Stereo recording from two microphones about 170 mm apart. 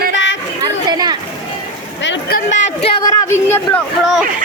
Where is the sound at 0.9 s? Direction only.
25° right (ahead or behind).